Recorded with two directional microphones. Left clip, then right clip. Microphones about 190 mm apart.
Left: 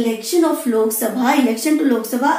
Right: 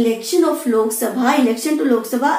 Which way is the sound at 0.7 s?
25° left (ahead or behind).